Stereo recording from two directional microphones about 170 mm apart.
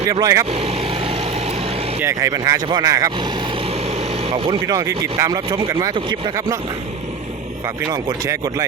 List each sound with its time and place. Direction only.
0.1 s speech: 20° right (ahead or behind)
0.5 s vehicle: 35° right (ahead or behind)
2.0 s speech: 15° right (ahead or behind)
4.3 s speech: 35° right (ahead or behind)
4.6 s speech: 20° right (ahead or behind)
7.9 s speech: 20° right (ahead or behind)